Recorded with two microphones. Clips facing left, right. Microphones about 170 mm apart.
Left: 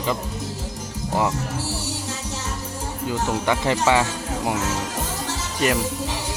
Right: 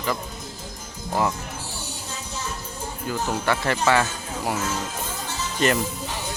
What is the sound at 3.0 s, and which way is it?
Speech, 20° left (ahead or behind).